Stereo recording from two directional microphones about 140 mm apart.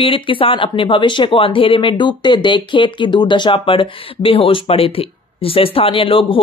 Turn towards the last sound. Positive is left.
turn(degrees=40)  # may be behind; listen again after turning